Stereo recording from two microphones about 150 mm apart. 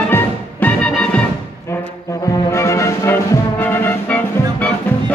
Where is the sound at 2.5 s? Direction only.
20° left (ahead or behind).